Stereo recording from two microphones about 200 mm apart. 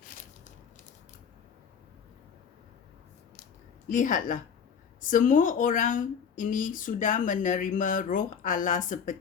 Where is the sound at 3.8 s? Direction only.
40° left (ahead or behind).